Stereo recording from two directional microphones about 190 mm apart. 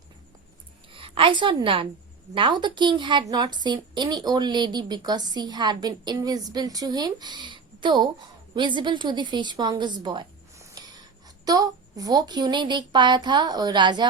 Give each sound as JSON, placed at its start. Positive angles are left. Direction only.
{"t": 0.9, "sound": "a woman's voice", "side_deg": -25}